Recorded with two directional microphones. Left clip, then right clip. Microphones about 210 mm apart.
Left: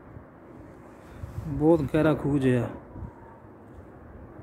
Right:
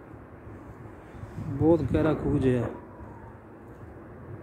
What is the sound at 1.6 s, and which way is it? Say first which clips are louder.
Speech: left 2 dB; 15° left (ahead or behind).